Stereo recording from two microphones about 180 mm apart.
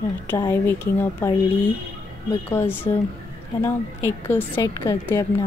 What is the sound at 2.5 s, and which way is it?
Speech, 15° left (ahead or behind).